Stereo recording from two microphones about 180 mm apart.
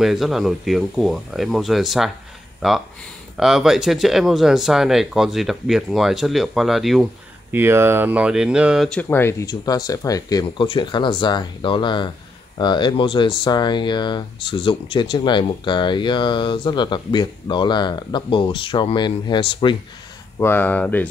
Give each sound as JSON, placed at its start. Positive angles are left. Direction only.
{"t": 0.0, "sound": "speech", "side_deg": 0}
{"t": 7.5, "sound": "speech", "side_deg": -15}
{"t": 20.3, "sound": "speech", "side_deg": 10}